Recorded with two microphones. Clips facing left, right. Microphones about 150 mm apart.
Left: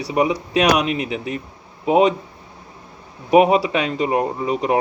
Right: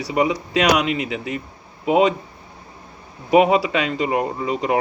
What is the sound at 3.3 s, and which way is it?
Speech, 5° left (ahead or behind).